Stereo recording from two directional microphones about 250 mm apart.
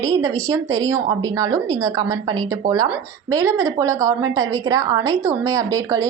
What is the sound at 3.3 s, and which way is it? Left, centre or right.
A woman's voice, centre.